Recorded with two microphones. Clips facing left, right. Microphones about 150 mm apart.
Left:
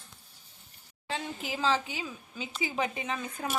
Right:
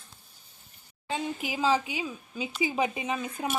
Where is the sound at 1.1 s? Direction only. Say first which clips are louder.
Right 3 dB; 15° right (ahead or behind).